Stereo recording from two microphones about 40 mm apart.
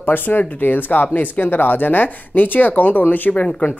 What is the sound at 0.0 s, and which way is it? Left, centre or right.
Speech, left.